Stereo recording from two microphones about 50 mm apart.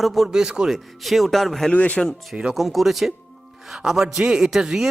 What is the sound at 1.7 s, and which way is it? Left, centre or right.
Speech, left.